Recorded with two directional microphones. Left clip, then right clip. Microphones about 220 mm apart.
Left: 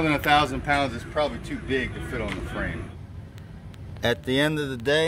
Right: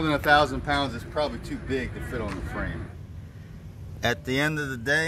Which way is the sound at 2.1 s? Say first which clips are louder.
Left 2 dB; 10° left (ahead or behind).